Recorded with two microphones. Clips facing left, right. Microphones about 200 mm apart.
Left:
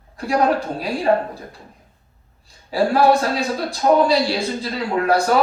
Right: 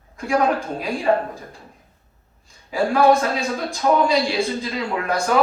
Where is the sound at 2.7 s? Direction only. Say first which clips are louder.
Left 1 dB; 35° left (ahead or behind).